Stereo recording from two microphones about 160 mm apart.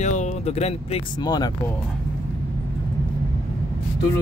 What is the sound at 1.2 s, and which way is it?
Speech, 25° left (ahead or behind).